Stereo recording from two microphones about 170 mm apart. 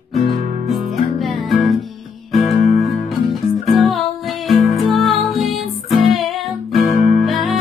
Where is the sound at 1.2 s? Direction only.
Centre (ahead or behind).